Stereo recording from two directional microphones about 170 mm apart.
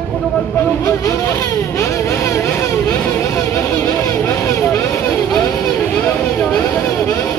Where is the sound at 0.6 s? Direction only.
15° left (ahead or behind).